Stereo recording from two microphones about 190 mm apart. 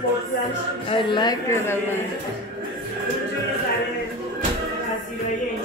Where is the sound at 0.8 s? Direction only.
20° left (ahead or behind).